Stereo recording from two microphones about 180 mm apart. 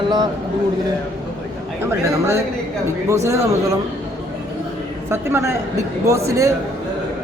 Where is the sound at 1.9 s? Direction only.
15° right (ahead or behind).